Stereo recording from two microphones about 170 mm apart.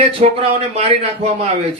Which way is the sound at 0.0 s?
35° right (ahead or behind).